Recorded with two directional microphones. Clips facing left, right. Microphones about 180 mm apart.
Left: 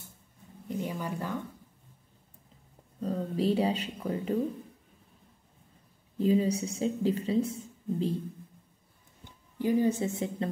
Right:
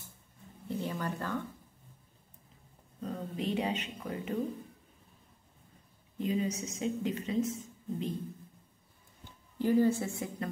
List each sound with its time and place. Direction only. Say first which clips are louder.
0.7 s a sound: left 1 dB; 15° left (ahead or behind)
3.0 s speech: left 7 dB; 35° left (ahead or behind)
6.1 s a woman's voice: left 7 dB; 30° left (ahead or behind)
9.6 s a woman's voice: left 1 dB; 15° left (ahead or behind)